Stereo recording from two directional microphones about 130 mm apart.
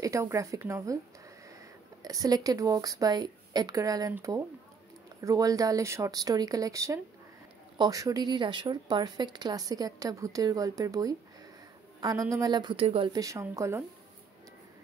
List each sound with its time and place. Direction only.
0.0 s a woman's voice: 25° right (ahead or behind)
2.0 s a woman's voice: 25° right (ahead or behind)
12.8 s speech: 45° right (ahead or behind)
13.1 s a woman's voice: 25° right (ahead or behind)